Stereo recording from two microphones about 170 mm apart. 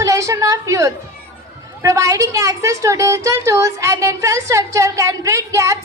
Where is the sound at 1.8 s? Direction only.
20° right (ahead or behind).